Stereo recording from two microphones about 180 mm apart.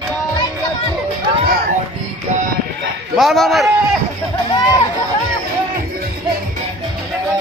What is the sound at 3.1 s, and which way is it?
Speech, centre (ahead or behind).